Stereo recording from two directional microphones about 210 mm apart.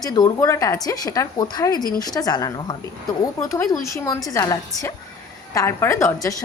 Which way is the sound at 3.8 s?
15° left (ahead or behind).